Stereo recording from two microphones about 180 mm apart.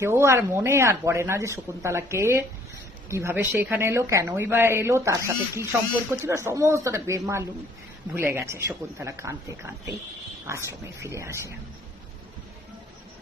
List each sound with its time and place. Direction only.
0.0 s speech: 15° right (ahead or behind)